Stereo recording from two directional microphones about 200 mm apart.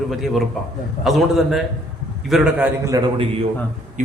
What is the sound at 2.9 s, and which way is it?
Speech, 20° right (ahead or behind).